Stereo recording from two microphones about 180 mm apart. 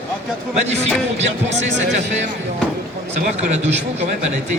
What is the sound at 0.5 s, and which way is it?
Speech, 35° right (ahead or behind).